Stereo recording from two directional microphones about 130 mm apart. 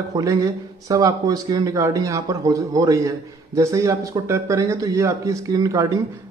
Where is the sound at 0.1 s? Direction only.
25° right (ahead or behind).